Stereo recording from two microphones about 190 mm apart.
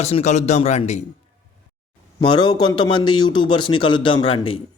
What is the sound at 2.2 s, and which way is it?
A man's voice, 20° left (ahead or behind).